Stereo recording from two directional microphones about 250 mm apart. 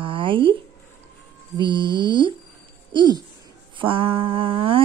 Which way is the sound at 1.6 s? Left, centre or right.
Centre.